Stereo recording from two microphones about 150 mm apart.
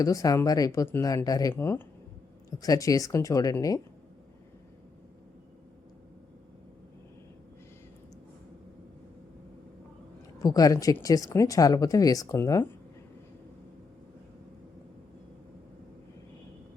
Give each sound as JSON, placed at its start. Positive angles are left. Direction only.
{"t": 0.0, "sound": "speech", "side_deg": 25}
{"t": 10.4, "sound": "speech", "side_deg": 25}